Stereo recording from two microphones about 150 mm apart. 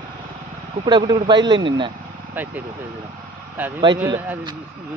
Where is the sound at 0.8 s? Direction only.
30° right (ahead or behind).